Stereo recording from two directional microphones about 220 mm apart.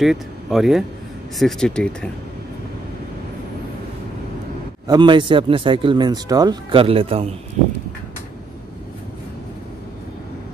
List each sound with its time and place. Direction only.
0.0 s speech: centre (ahead or behind)
4.8 s speech: 20° right (ahead or behind)